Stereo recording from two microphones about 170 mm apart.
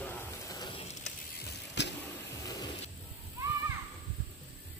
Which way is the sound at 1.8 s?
90° left.